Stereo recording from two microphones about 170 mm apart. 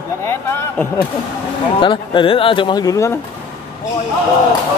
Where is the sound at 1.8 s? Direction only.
30° left (ahead or behind).